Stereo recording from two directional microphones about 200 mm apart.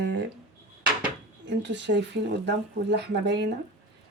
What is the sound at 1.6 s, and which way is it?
Speech, 60° right (ahead or behind).